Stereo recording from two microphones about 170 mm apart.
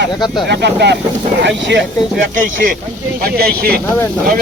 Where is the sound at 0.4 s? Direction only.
75° right (ahead or behind).